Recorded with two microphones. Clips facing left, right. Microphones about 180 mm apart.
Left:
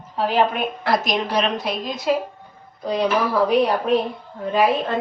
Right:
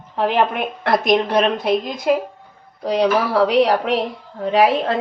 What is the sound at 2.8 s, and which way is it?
Speech, 75° right (ahead or behind).